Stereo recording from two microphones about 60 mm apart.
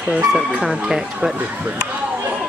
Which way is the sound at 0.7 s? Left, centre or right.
Centre.